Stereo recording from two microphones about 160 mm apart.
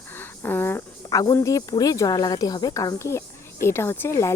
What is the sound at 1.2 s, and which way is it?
Speech, 20° left (ahead or behind).